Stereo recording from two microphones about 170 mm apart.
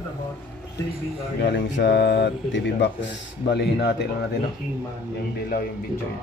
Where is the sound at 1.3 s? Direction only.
90° left; by 4.0 s 75° left (ahead or behind).